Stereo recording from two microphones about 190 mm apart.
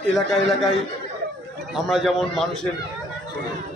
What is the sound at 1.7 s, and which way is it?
Speech, centre (ahead or behind).